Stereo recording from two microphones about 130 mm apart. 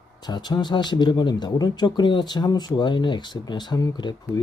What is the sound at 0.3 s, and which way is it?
Speech, 35° left (ahead or behind).